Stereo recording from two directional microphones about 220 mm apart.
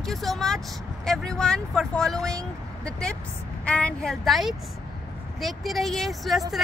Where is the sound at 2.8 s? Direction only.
5° left (ahead or behind).